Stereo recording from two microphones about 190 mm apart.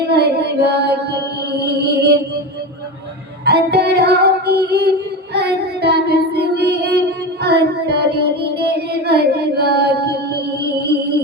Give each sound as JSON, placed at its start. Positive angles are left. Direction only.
{"t": 0.1, "sound": "music", "side_deg": -60}
{"t": 3.4, "sound": "music", "side_deg": -60}
{"t": 7.4, "sound": "child singing", "side_deg": -60}